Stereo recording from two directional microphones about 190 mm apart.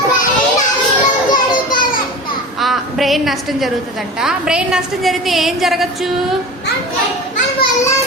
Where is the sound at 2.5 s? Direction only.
Centre (ahead or behind).